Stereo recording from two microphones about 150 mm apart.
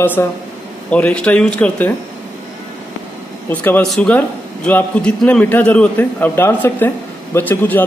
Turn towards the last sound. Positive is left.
turn(degrees=10)  # may be behind; listen again after turning